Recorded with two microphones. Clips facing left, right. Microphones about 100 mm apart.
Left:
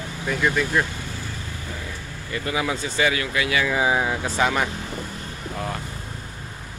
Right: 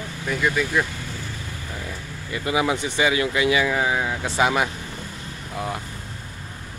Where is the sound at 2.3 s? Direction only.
20° right (ahead or behind).